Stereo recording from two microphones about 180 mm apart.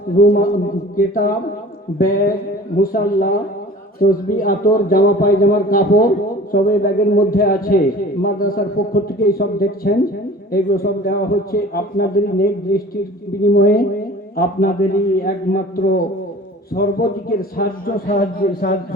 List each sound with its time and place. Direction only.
0.9 s a man's voice: 55° left (ahead or behind)